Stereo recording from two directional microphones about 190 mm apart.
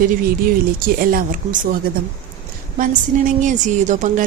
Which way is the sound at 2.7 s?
45° right (ahead or behind).